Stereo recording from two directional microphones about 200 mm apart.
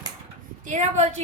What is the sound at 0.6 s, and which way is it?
Speech, 35° right (ahead or behind).